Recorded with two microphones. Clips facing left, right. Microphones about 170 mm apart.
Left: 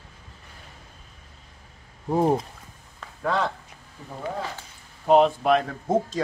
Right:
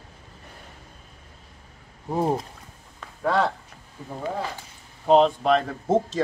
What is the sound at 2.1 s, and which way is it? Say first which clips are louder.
Speech: left 3 dB; 15° left (ahead or behind).